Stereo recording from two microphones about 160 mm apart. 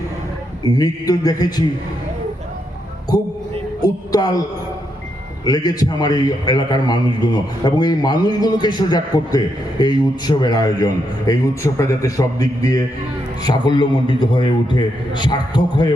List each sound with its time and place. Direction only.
0.6 s a man's voice: 25° left (ahead or behind)
3.1 s a man's voice: 20° left (ahead or behind)
5.5 s a man's voice: 25° left (ahead or behind)